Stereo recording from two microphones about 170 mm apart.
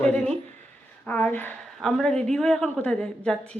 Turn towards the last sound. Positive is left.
turn(degrees=5)  # may be behind; listen again after turning